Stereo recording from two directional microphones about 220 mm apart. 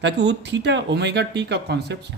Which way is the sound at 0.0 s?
55° right (ahead or behind).